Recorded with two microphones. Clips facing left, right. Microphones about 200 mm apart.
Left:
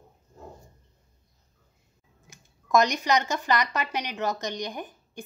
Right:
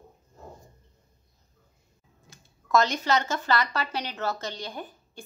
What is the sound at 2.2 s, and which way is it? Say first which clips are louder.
A woman's voice: even; 15° left (ahead or behind).